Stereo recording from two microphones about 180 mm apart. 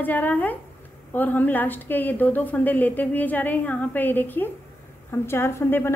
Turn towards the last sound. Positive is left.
turn(degrees=10)  # may be behind; listen again after turning